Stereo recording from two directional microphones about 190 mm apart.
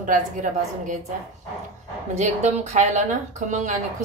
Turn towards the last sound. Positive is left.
turn(degrees=-40)  # may be behind; listen again after turning